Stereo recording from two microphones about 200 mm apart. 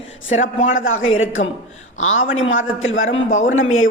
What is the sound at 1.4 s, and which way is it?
Speech, 30° left (ahead or behind).